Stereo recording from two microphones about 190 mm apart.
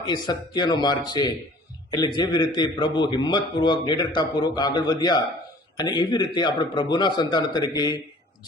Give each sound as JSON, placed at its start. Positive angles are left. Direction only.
{"t": 0.0, "sound": "a man's voice", "side_deg": 25}